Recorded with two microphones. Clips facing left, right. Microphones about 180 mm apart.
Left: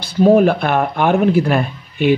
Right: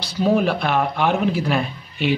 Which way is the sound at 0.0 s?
50° left (ahead or behind).